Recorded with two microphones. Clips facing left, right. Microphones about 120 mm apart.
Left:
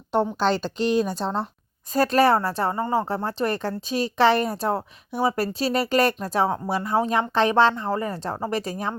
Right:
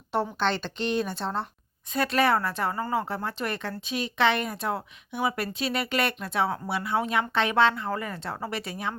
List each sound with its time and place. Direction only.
0.2 s speech: 30° left (ahead or behind)
0.8 s a woman's voice: 5° left (ahead or behind)
1.2 s speech: 30° left (ahead or behind)